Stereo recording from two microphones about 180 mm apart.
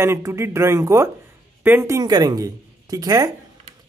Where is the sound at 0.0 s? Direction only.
15° right (ahead or behind).